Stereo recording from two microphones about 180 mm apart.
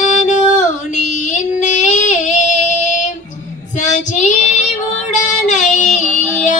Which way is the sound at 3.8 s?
40° left (ahead or behind).